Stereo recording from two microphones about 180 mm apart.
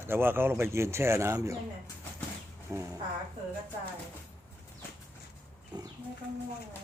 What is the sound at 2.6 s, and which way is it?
Speech, 15° right (ahead or behind).